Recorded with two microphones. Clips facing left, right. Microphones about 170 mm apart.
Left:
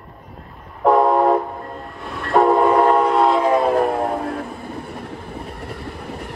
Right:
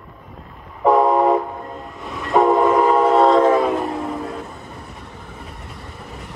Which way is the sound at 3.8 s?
65° left (ahead or behind).